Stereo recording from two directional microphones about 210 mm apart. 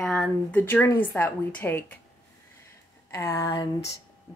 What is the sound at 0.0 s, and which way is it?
A woman's voice, 5° left (ahead or behind).